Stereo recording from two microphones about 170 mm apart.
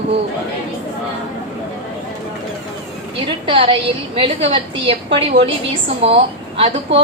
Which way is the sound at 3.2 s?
30° right (ahead or behind).